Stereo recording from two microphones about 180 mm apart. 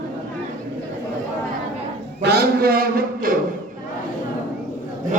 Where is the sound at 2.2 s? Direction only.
60° right (ahead or behind).